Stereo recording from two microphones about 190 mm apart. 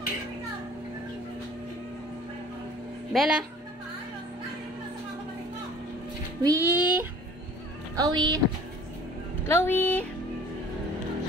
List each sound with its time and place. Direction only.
3.1 s speech: 5° right (ahead or behind)
6.4 s a child's voice: 15° right (ahead or behind)
7.9 s a woman's voice: 20° right (ahead or behind)
9.5 s speech: 10° left (ahead or behind)